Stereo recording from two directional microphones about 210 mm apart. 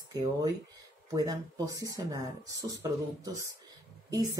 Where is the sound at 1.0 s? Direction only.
15° right (ahead or behind).